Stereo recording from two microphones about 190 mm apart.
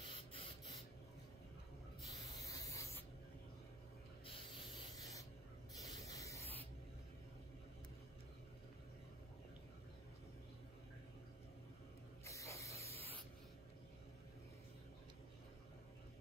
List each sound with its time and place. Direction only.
0.0 s a sound: 30° left (ahead or behind)
2.2 s rub: 20° left (ahead or behind)
5.9 s spray: 20° left (ahead or behind)
12.3 s spray: 15° left (ahead or behind)
12.9 s spray: 30° right (ahead or behind)